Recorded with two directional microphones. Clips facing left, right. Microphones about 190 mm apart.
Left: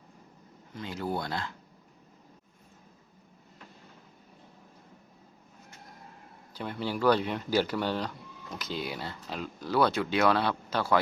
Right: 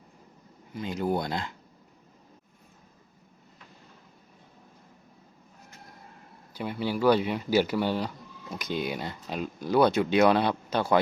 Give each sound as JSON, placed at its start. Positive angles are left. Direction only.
{"t": 0.7, "sound": "speech", "side_deg": -15}
{"t": 6.5, "sound": "speech", "side_deg": -10}